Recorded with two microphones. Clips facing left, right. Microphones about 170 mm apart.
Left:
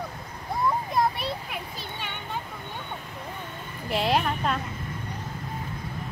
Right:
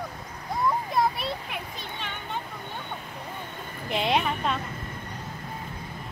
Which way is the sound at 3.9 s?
Centre (ahead or behind).